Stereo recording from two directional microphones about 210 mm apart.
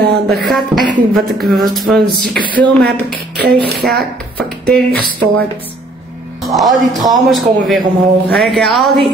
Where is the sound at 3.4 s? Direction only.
50° right (ahead or behind).